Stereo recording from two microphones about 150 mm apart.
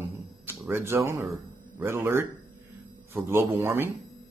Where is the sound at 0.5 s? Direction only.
15° right (ahead or behind).